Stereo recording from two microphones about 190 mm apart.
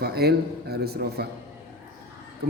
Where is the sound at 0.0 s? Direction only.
55° right (ahead or behind).